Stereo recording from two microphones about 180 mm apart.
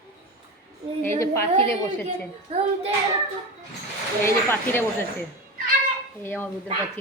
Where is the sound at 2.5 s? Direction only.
30° right (ahead or behind).